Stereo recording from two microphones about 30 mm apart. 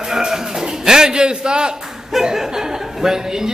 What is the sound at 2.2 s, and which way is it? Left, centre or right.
Speech, centre.